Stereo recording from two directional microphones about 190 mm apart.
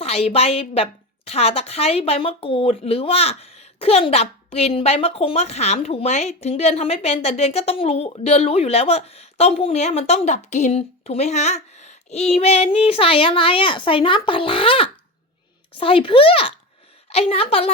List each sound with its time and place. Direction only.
0.0 s a woman's voice: 30° left (ahead or behind)